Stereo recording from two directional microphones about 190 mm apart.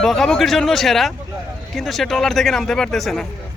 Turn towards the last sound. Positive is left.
turn(degrees=0)  # may be behind; listen again after turning